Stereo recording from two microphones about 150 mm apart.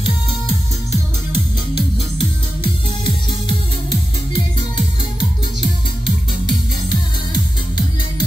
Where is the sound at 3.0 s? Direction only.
35° left (ahead or behind).